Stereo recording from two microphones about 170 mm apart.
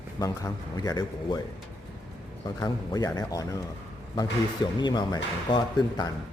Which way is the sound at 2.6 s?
20° left (ahead or behind).